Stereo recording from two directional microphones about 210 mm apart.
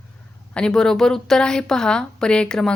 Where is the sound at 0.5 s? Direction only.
5° left (ahead or behind).